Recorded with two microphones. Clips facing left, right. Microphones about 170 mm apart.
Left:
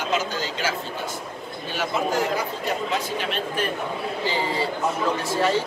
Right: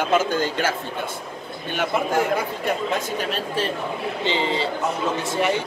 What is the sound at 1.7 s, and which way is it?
Speech, 55° right (ahead or behind).